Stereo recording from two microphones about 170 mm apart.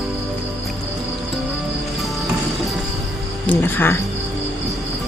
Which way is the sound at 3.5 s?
10° left (ahead or behind).